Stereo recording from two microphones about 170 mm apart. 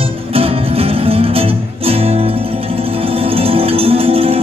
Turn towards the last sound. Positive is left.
turn(degrees=-35)  # may be behind; listen again after turning